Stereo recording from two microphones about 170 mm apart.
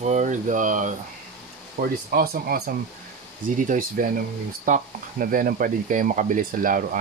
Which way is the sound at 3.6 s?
50° right (ahead or behind).